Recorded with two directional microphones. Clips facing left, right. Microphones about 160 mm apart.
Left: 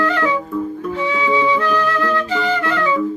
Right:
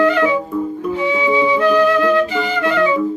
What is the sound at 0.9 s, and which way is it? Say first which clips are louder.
Flute: right 2 dB; 15° right (ahead or behind).